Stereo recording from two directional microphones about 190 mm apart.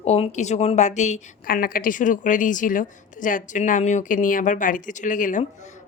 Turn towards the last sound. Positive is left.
turn(degrees=40)  # may be behind; listen again after turning